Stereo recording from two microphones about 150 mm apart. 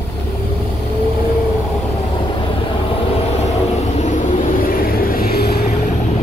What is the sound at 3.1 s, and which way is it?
Vehicle, 45° left (ahead or behind).